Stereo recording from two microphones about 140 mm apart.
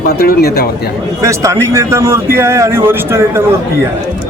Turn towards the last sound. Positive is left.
turn(degrees=-15)  # may be behind; listen again after turning